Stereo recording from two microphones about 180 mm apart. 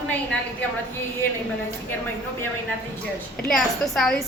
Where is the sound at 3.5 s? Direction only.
Centre (ahead or behind).